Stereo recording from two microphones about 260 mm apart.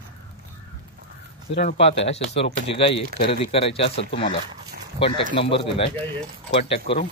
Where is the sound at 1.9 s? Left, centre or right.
Left.